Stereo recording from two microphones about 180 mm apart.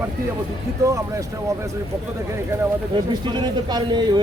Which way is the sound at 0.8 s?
15° right (ahead or behind).